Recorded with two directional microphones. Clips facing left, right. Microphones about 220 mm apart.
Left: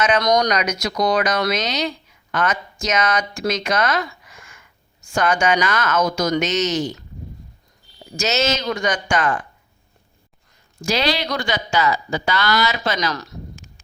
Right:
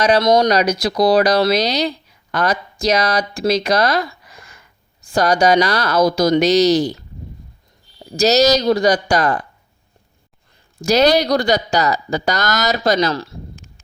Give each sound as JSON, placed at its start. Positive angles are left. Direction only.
{"t": 0.0, "sound": "speech", "side_deg": -30}
{"t": 8.1, "sound": "speech", "side_deg": -35}
{"t": 10.8, "sound": "speech", "side_deg": -40}